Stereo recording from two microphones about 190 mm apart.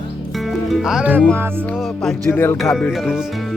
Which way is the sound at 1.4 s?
10° right (ahead or behind).